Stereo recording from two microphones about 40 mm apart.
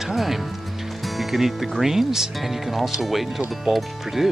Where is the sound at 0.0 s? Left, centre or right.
Centre.